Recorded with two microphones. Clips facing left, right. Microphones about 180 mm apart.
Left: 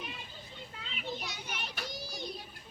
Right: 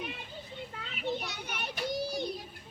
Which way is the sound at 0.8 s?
60° right (ahead or behind).